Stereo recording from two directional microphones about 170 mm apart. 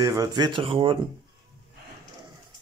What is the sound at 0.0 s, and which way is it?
Speech, 20° right (ahead or behind).